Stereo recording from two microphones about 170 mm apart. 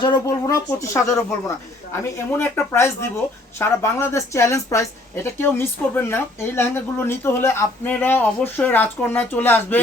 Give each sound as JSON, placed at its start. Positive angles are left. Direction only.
{"t": 0.0, "sound": "speech", "side_deg": 25}
{"t": 2.1, "sound": "a woman's voice", "side_deg": 15}